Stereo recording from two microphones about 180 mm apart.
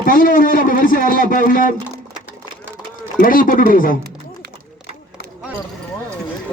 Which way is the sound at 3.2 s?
50° left (ahead or behind).